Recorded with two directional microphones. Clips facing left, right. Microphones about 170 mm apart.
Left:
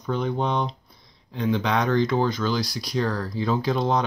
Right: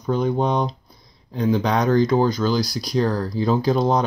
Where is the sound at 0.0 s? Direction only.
40° right (ahead or behind).